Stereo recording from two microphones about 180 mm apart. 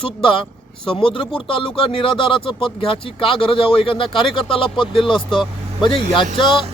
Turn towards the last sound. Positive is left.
turn(degrees=25)  # may be behind; listen again after turning